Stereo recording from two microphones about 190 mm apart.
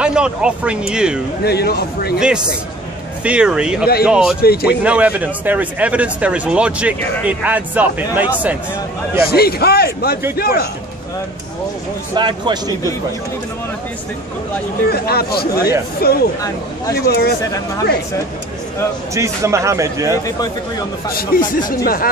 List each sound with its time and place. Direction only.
0.0 s speech: 5° right (ahead or behind)
1.4 s a man's voice: 55° left (ahead or behind)
2.1 s speech: 5° right (ahead or behind)
4.4 s a man's voice: 55° left (ahead or behind)
4.6 s speech: 5° right (ahead or behind)
9.2 s a man's voice: 55° left (ahead or behind)
12.2 s a man's voice: 25° right (ahead or behind)
14.9 s a man's voice: 55° left (ahead or behind)
19.1 s speech: 15° right (ahead or behind)
21.1 s speech: 50° left (ahead or behind)